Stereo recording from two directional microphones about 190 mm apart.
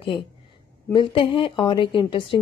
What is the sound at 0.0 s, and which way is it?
A woman's voice, 25° left (ahead or behind).